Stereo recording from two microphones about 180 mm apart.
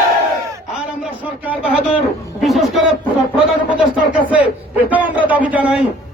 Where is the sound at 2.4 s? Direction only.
Centre (ahead or behind).